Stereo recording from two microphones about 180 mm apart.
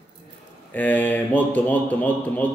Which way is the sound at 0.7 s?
10° left (ahead or behind).